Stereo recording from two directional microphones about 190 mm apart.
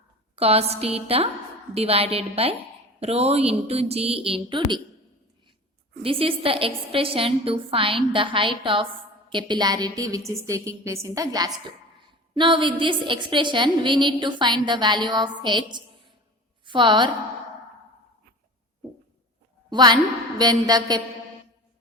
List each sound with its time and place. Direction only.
0.3 s a woman's voice: 30° right (ahead or behind)
6.0 s a woman's voice: 30° right (ahead or behind)
19.7 s a woman's voice: 20° right (ahead or behind)